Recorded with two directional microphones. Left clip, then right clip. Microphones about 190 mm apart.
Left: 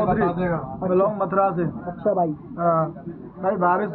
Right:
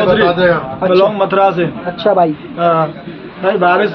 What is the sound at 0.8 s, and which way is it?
Speech, 35° right (ahead or behind).